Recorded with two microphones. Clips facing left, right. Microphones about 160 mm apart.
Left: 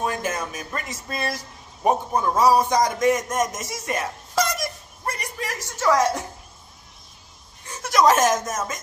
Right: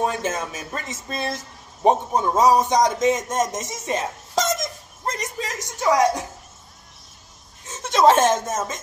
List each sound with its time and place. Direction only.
0.0 s speech: 25° right (ahead or behind)
4.6 s music: 20° right (ahead or behind)
7.6 s speech: 25° right (ahead or behind)